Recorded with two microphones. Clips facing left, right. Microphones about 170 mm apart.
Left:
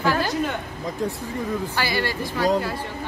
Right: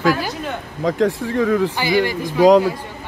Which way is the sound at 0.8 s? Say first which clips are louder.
Right 12 dB; 90° right.